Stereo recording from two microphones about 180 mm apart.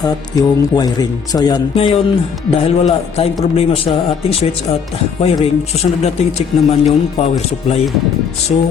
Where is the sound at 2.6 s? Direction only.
35° left (ahead or behind).